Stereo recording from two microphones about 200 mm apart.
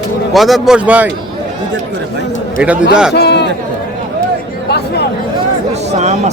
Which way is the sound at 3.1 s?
55° left (ahead or behind).